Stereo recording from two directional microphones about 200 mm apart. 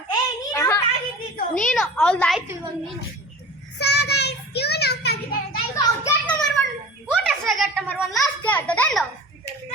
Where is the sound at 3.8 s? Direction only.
55° left (ahead or behind).